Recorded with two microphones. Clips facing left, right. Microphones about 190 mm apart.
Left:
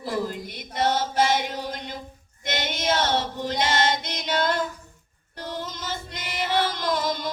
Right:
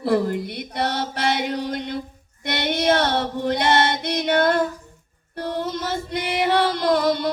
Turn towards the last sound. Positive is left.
turn(degrees=-65)  # may be behind; listen again after turning